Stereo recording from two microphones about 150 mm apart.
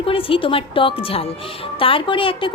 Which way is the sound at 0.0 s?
35° left (ahead or behind).